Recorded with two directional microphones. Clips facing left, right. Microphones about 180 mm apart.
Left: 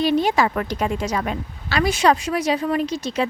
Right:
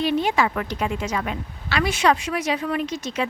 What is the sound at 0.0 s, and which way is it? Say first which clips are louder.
A woman's voice: left 3 dB; 35° left (ahead or behind).